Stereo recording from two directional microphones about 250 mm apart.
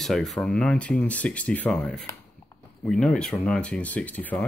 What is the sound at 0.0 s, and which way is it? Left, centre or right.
Speech, centre.